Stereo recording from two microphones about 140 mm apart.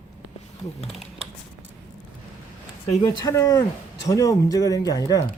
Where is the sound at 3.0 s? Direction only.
25° left (ahead or behind).